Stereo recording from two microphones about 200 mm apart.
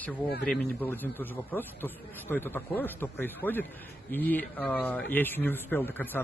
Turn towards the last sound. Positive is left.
turn(degrees=10)  # may be behind; listen again after turning